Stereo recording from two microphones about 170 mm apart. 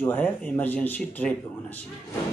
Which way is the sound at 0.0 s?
10° left (ahead or behind).